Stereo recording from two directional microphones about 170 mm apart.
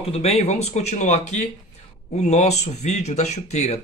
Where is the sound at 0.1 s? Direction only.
35° left (ahead or behind).